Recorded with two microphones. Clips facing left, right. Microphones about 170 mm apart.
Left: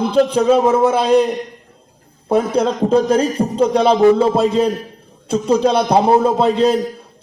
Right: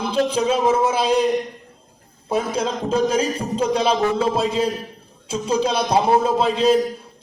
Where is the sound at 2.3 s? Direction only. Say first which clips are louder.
Left 6 dB; 60° left (ahead or behind).